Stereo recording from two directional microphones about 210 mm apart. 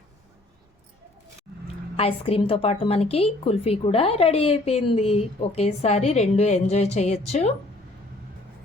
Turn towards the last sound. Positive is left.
turn(degrees=30)  # may be behind; listen again after turning